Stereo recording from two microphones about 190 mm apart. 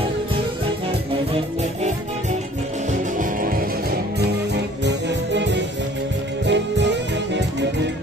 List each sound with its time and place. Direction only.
1.3 s music: 35° right (ahead or behind)
2.9 s music: 45° right (ahead or behind)
4.8 s music: 70° right (ahead or behind)